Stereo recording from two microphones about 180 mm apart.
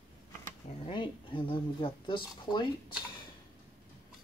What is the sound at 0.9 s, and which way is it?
Speech, 30° left (ahead or behind).